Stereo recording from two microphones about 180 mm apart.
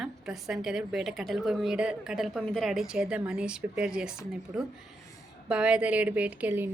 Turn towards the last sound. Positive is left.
turn(degrees=-10)  # may be behind; listen again after turning